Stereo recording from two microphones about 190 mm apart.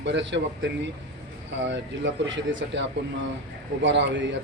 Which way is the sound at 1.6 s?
75° right (ahead or behind).